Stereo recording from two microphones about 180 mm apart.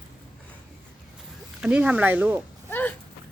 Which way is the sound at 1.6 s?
5° right (ahead or behind).